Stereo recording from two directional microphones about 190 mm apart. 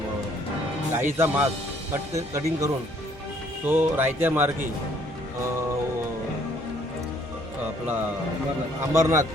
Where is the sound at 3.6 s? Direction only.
10° right (ahead or behind).